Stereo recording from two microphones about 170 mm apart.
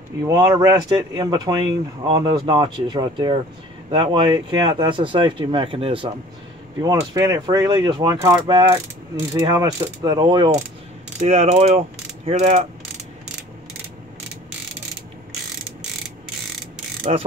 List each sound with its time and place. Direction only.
0.2 s speech: 20° right (ahead or behind)
6.8 s speech: 20° right (ahead or behind)
11.1 s mechanisms: 40° right (ahead or behind)
17.1 s mechanisms: 40° right (ahead or behind)